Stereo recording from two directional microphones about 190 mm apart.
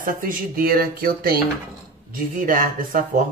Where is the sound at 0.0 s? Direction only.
45° right (ahead or behind).